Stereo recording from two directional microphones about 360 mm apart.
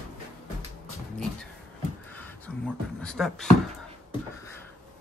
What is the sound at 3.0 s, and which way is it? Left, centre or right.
Speech, centre.